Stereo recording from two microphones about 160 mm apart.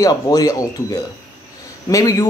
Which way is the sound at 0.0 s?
25° left (ahead or behind).